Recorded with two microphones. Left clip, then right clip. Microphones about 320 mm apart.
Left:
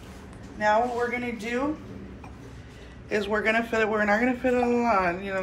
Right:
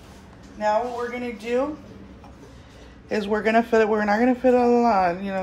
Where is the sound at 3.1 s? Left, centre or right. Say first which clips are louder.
Right 3 dB; right.